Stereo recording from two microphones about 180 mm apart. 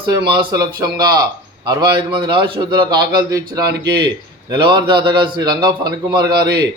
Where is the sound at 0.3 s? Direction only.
25° right (ahead or behind).